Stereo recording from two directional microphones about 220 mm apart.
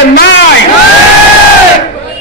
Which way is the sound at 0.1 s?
50° left (ahead or behind).